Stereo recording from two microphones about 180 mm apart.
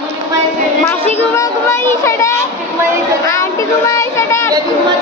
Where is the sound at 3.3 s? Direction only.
15° left (ahead or behind).